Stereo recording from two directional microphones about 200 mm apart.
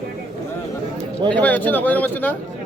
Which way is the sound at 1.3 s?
10° left (ahead or behind).